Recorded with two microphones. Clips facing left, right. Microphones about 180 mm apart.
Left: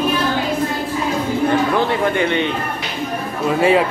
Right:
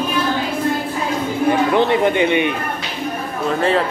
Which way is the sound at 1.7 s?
20° right (ahead or behind).